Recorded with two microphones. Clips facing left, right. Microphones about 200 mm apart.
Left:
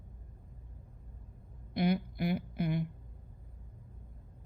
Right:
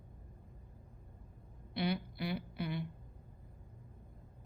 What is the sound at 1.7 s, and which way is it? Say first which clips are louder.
Speech: left 5 dB; 50° left (ahead or behind).